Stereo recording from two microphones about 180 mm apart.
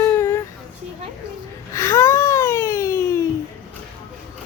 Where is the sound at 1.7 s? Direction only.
15° left (ahead or behind).